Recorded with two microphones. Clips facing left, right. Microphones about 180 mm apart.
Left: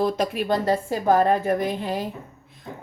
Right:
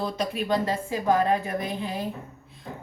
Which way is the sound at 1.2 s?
50° left (ahead or behind).